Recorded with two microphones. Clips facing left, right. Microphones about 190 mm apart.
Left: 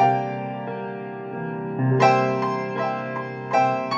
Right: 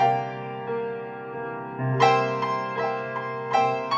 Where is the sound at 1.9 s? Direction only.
50° left (ahead or behind).